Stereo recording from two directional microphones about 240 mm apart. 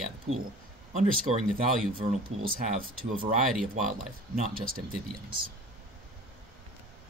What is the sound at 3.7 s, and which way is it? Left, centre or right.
Speech, right.